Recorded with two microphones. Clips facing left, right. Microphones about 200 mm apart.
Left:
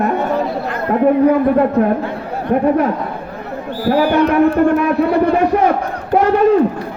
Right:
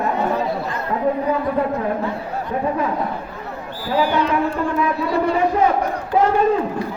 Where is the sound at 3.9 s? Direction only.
60° left (ahead or behind).